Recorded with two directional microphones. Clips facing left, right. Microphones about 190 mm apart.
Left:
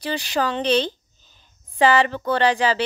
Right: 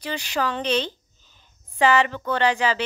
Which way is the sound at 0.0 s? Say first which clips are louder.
Left 3 dB; 35° left (ahead or behind).